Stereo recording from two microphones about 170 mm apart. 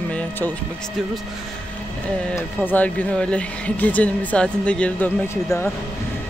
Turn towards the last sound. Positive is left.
turn(degrees=15)  # may be behind; listen again after turning